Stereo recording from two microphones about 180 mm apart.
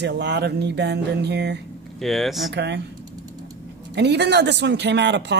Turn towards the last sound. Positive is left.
turn(degrees=-75)  # may be behind; listen again after turning